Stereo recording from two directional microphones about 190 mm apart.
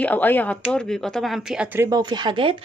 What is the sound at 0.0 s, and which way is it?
Speech, 10° left (ahead or behind).